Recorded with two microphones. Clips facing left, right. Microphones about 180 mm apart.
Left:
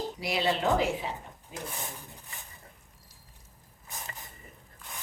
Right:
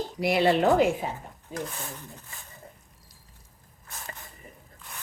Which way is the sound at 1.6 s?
15° left (ahead or behind).